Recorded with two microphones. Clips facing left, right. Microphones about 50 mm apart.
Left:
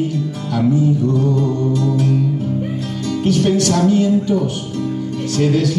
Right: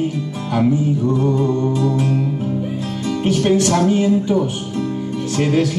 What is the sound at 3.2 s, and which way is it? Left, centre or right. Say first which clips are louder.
Music: even; right.